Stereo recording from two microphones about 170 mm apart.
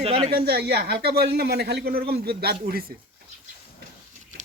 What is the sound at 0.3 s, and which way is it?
Speech, 70° right (ahead or behind).